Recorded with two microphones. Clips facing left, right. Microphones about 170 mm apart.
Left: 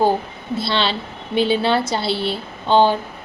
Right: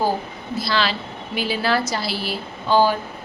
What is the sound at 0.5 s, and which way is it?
A woman's voice, 30° left (ahead or behind).